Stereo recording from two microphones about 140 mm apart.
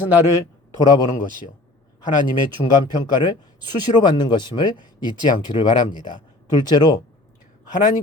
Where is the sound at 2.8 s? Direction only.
30° left (ahead or behind).